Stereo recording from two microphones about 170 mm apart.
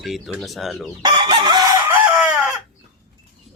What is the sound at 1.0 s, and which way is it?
Chicken, 25° right (ahead or behind).